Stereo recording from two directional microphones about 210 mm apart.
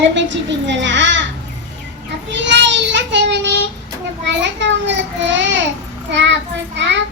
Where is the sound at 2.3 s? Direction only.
60° right (ahead or behind).